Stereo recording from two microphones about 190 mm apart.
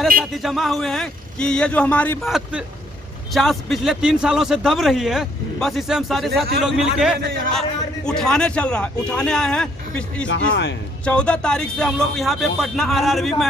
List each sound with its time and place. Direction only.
0.4 s a man's voice: centre (ahead or behind)
2.2 s a man's voice: centre (ahead or behind)
10.2 s a man's voice: 75° left (ahead or behind)
11.1 s a man's voice: 5° left (ahead or behind)